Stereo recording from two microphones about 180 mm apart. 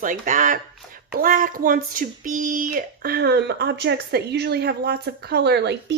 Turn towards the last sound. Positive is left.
turn(degrees=-70)  # may be behind; listen again after turning